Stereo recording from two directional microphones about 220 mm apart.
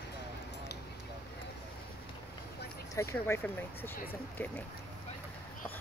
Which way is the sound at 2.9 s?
10° left (ahead or behind).